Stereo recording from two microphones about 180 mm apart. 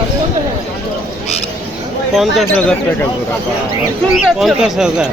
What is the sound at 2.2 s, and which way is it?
Speech, centre (ahead or behind).